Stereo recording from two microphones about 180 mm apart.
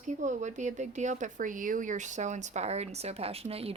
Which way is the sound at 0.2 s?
40° right (ahead or behind).